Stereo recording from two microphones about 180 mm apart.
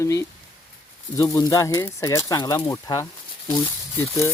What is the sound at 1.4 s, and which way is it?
Speech, 20° left (ahead or behind).